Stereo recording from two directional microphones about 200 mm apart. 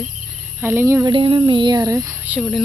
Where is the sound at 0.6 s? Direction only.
10° right (ahead or behind).